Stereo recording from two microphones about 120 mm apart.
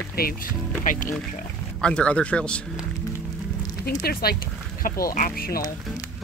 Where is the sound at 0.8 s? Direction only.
90° left.